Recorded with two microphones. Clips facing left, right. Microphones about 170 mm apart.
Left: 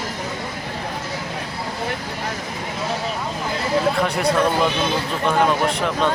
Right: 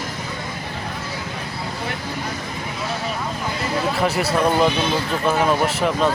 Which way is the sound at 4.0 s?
5° right (ahead or behind).